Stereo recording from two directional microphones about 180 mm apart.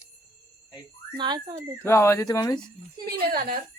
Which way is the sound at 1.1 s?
25° right (ahead or behind).